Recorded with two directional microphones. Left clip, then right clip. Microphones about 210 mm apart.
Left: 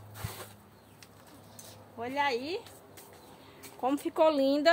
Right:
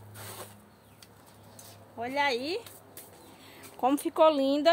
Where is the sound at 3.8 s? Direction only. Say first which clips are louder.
Right 4 dB; 25° right (ahead or behind).